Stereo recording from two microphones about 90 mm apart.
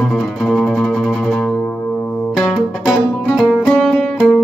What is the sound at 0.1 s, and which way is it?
Music, centre (ahead or behind).